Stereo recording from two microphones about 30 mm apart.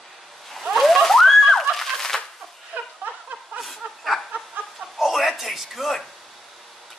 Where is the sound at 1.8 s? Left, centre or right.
Centre.